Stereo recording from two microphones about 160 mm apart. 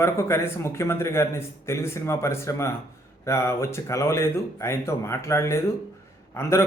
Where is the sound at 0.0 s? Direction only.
15° left (ahead or behind).